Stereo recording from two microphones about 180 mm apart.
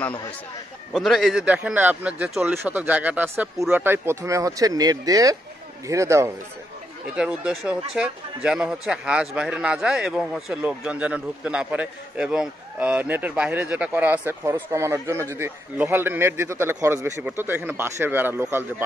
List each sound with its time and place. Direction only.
0.9 s a man's voice: centre (ahead or behind)